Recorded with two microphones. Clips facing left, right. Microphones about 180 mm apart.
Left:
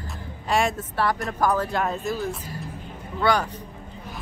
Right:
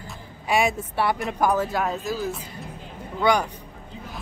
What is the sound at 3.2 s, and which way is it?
Speech, 15° right (ahead or behind).